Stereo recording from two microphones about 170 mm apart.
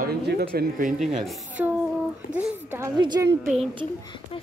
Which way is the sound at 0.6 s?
50° right (ahead or behind).